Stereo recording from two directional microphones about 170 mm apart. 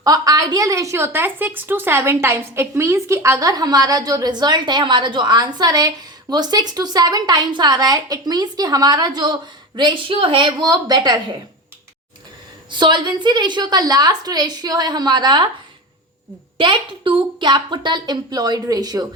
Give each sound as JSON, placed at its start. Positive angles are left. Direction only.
{"t": 0.0, "sound": "a woman's voice", "side_deg": -20}
{"t": 12.7, "sound": "a woman's voice", "side_deg": -25}
{"t": 16.6, "sound": "a woman's voice", "side_deg": -30}